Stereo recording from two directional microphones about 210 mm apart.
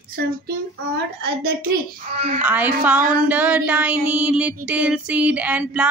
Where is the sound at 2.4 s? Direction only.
5° right (ahead or behind).